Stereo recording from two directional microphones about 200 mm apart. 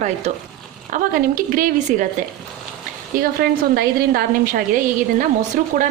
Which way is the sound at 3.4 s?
50° right (ahead or behind).